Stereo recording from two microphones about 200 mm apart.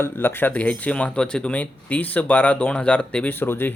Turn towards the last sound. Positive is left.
turn(degrees=10)  # may be behind; listen again after turning